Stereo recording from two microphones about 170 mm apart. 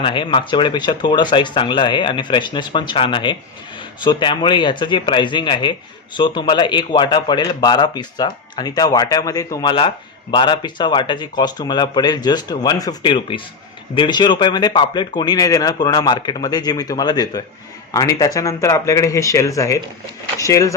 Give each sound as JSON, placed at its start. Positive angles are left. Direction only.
{"t": 0.0, "sound": "speech", "side_deg": 30}